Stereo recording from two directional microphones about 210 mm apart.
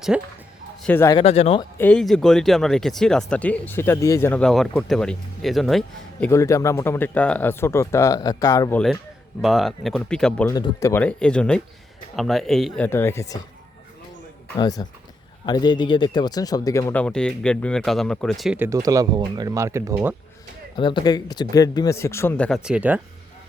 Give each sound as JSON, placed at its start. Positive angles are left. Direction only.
{"t": 0.1, "sound": "speech", "side_deg": -5}
{"t": 0.8, "sound": "speech", "side_deg": 10}
{"t": 1.2, "sound": "speech", "side_deg": 30}
{"t": 1.8, "sound": "speech", "side_deg": 5}
{"t": 9.4, "sound": "speech", "side_deg": 0}
{"t": 10.5, "sound": "speech", "side_deg": 15}
{"t": 14.5, "sound": "speech", "side_deg": 20}
{"t": 20.7, "sound": "speech", "side_deg": 20}